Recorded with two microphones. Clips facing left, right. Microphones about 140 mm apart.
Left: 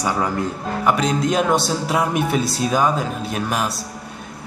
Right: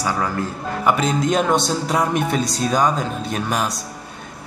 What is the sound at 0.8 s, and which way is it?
Speech, centre (ahead or behind).